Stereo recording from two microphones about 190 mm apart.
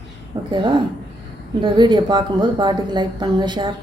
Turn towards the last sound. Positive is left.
turn(degrees=-25)  # may be behind; listen again after turning